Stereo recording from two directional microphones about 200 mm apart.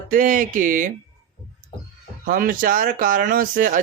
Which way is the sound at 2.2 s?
45° right (ahead or behind).